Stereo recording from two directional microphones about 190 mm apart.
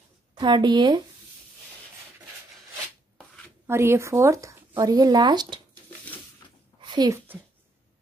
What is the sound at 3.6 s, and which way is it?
Speech, 15° right (ahead or behind).